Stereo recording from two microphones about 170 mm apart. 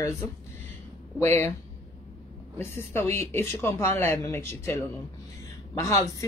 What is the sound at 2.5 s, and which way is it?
Speech, 15° left (ahead or behind).